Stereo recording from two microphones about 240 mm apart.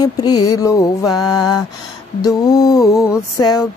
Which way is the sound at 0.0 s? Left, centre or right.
Centre.